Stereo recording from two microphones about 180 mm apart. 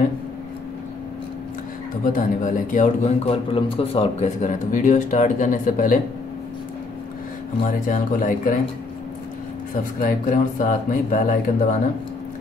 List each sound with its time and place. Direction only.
2.0 s a man's voice: 45° left (ahead or behind)
7.6 s a man's voice: 50° left (ahead or behind)
9.9 s a man's voice: 50° left (ahead or behind)